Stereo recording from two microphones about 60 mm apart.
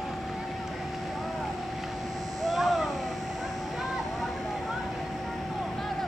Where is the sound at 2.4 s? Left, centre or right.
Centre.